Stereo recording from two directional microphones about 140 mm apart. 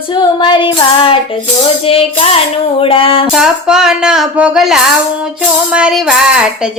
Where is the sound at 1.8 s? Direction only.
45° left (ahead or behind).